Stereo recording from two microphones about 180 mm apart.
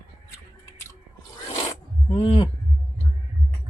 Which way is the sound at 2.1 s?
30° left (ahead or behind).